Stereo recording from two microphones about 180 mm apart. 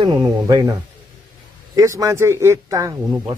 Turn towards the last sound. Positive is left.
turn(degrees=-15)  # may be behind; listen again after turning